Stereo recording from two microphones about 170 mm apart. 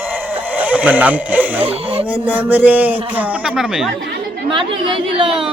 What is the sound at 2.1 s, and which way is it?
Speech, 10° right (ahead or behind).